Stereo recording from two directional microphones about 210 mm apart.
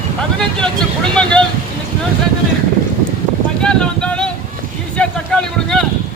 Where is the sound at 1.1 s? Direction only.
5° left (ahead or behind).